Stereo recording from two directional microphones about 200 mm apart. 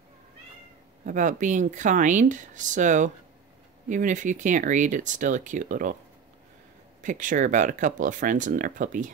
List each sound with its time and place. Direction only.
1.0 s speech: 40° right (ahead or behind)
7.0 s speech: 40° right (ahead or behind)